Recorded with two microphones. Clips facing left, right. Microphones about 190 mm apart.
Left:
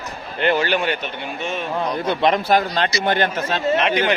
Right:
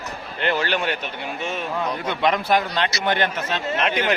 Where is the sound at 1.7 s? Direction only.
30° left (ahead or behind).